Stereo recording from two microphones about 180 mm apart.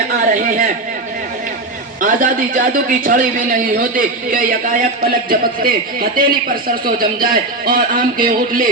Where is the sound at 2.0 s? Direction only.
50° right (ahead or behind).